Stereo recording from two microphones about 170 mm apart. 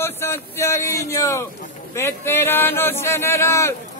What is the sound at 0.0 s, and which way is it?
Speech, 15° left (ahead or behind).